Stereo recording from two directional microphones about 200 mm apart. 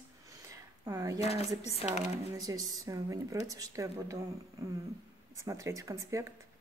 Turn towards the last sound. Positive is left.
turn(degrees=-15)  # may be behind; listen again after turning